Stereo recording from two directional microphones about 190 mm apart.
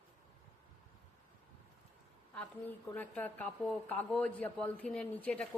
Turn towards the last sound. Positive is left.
turn(degrees=5)  # may be behind; listen again after turning